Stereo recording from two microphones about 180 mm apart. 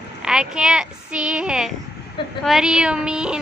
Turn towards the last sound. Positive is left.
turn(degrees=-5)  # may be behind; listen again after turning